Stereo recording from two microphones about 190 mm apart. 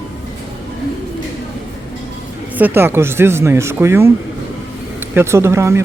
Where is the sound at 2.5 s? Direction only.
10° right (ahead or behind).